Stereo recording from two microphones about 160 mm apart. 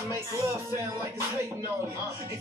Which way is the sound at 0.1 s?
15° right (ahead or behind).